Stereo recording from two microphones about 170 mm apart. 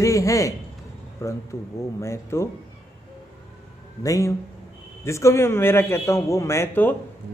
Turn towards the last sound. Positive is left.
turn(degrees=10)  # may be behind; listen again after turning